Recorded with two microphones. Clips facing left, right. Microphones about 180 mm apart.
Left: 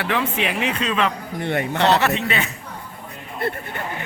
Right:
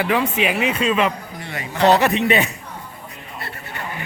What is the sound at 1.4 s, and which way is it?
Speech, 60° left (ahead or behind).